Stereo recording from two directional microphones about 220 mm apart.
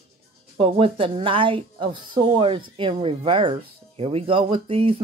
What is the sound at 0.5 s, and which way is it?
Speech, 25° right (ahead or behind).